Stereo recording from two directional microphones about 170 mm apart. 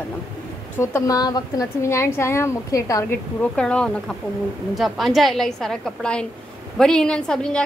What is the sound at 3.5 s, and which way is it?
A woman's voice, 5° left (ahead or behind).